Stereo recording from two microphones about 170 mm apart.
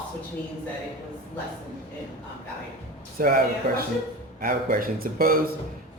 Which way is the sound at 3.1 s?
55° right (ahead or behind).